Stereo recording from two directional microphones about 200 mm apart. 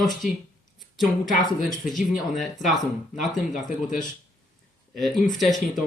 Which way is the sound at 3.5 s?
40° left (ahead or behind).